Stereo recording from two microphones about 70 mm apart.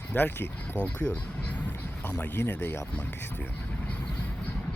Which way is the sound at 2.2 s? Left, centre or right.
Left.